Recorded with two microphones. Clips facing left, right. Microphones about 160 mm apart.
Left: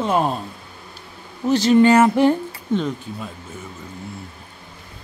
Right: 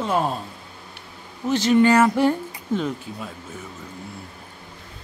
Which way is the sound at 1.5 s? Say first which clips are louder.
Left 3 dB; 35° left (ahead or behind).